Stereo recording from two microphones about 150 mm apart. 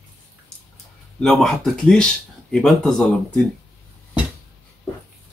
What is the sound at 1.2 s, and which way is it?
Speech, 5° left (ahead or behind).